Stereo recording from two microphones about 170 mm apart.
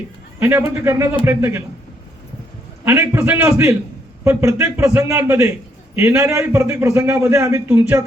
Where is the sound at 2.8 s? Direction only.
15° right (ahead or behind).